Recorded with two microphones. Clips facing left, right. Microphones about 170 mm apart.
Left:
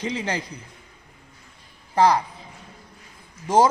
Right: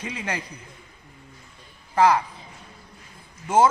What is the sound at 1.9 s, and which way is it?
Speech, 35° left (ahead or behind).